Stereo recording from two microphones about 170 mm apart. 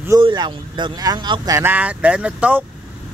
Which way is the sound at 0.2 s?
25° right (ahead or behind).